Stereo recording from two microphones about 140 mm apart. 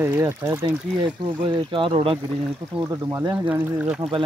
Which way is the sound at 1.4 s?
35° right (ahead or behind).